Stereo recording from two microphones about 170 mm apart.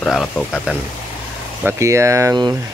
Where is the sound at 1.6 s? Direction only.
15° right (ahead or behind).